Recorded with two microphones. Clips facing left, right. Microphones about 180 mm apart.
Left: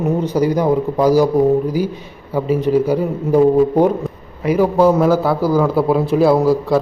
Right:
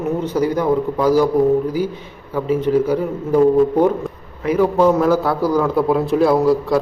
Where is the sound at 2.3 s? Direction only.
10° left (ahead or behind).